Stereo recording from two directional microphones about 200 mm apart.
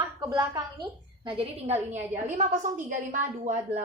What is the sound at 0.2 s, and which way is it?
A woman's voice, 20° right (ahead or behind).